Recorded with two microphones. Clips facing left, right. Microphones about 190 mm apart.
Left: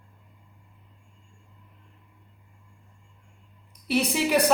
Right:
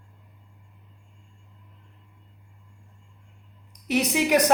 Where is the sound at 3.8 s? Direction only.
15° right (ahead or behind).